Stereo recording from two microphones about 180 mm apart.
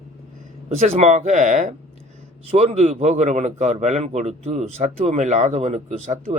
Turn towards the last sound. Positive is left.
turn(degrees=-35)  # may be behind; listen again after turning